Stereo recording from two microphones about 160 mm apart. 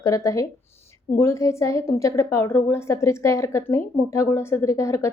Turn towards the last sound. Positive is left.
turn(degrees=20)  # may be behind; listen again after turning